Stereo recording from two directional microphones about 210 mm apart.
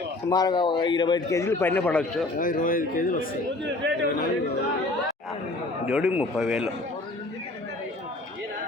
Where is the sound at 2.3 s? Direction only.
40° left (ahead or behind).